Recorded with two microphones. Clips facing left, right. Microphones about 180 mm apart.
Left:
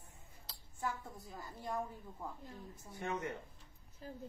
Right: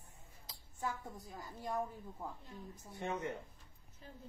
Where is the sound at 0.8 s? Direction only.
15° right (ahead or behind).